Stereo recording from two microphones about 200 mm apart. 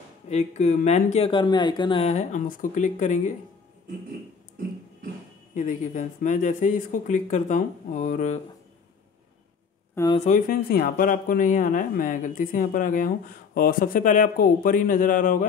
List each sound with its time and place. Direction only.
0.3 s speech: 35° left (ahead or behind)
5.5 s speech: 40° left (ahead or behind)
10.2 s speech: 45° left (ahead or behind)